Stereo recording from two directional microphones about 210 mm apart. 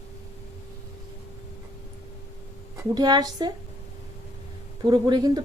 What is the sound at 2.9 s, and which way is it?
Speech, 20° right (ahead or behind).